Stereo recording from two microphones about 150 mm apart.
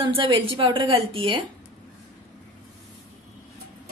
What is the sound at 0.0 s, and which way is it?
A woman's voice, 35° right (ahead or behind).